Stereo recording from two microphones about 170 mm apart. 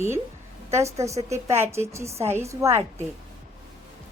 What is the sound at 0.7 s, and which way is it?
A woman's voice, 15° right (ahead or behind).